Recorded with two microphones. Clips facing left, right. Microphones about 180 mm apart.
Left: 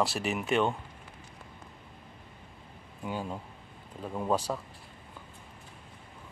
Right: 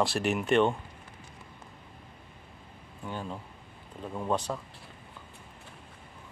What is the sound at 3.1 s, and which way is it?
Speech, 10° left (ahead or behind).